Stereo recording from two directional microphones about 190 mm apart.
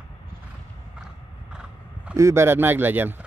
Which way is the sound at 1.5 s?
5° right (ahead or behind).